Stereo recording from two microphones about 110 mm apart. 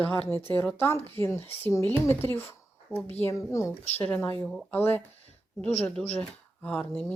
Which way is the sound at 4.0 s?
15° left (ahead or behind).